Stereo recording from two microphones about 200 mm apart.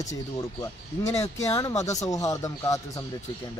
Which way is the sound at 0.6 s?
15° left (ahead or behind).